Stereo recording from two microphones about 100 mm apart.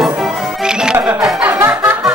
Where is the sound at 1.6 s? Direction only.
25° right (ahead or behind).